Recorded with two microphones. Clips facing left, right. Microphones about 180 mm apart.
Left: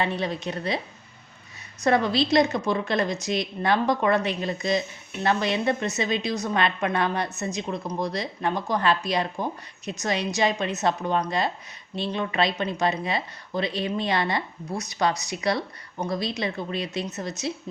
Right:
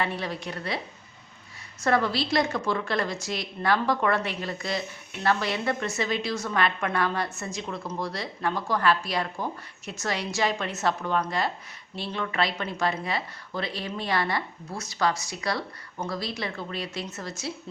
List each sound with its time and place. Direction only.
0.0 s a woman's voice: 20° left (ahead or behind)
1.8 s a woman's voice: 20° left (ahead or behind)